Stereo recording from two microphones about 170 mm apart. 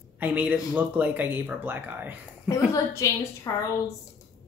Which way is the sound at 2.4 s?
20° left (ahead or behind).